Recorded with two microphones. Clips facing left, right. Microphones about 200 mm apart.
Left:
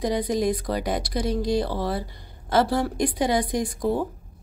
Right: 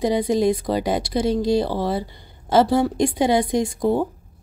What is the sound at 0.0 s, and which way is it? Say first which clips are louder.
Speech: right 5 dB; 25° right (ahead or behind).